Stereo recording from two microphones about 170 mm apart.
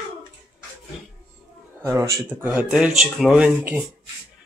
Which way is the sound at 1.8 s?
15° right (ahead or behind).